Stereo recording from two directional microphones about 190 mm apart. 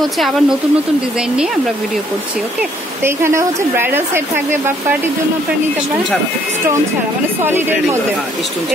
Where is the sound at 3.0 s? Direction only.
15° right (ahead or behind).